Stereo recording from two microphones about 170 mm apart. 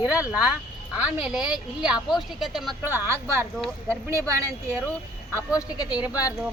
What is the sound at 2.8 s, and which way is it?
Speech, 15° right (ahead or behind).